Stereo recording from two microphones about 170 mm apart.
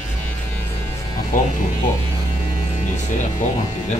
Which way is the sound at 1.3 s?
55° left (ahead or behind).